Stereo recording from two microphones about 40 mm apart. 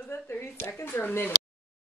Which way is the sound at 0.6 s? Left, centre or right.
Left.